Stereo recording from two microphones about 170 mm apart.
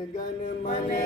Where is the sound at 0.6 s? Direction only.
55° left (ahead or behind).